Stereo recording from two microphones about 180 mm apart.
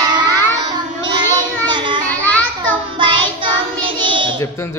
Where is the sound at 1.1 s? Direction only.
25° right (ahead or behind).